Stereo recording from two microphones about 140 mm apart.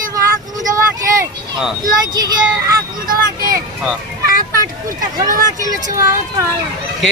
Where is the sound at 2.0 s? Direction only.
25° right (ahead or behind).